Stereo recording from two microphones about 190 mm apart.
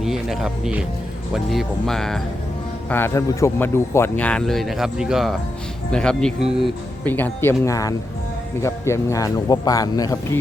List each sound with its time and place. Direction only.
0.0 s speech: centre (ahead or behind)
2.9 s speech: 15° left (ahead or behind)